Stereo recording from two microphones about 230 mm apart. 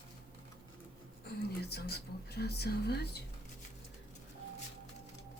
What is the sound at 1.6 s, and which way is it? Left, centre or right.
Speech, left.